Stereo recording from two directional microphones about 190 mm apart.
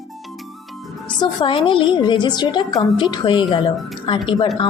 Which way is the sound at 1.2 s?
25° left (ahead or behind).